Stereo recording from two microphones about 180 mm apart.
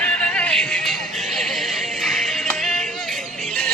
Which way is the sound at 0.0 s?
5° left (ahead or behind).